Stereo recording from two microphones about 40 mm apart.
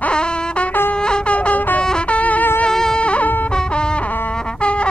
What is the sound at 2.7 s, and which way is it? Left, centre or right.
Music, centre.